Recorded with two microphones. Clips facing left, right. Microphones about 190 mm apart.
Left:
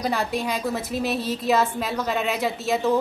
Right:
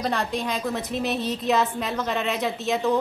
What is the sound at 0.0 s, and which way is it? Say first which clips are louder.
A woman's voice: left 1 dB; 5° left (ahead or behind).